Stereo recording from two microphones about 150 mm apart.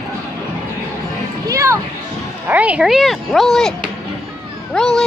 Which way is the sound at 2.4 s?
10° right (ahead or behind).